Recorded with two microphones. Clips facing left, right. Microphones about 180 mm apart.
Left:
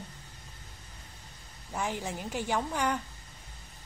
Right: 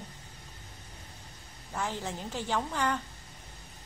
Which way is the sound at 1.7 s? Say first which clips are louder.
Left 1 dB; 15° left (ahead or behind).